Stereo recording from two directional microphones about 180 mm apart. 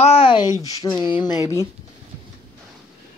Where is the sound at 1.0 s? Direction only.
25° left (ahead or behind).